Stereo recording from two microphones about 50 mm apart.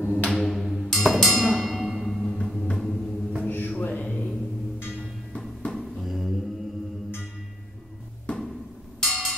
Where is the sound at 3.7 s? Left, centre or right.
Left.